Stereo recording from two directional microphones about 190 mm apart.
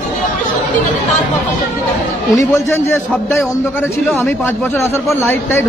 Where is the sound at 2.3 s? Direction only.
10° left (ahead or behind).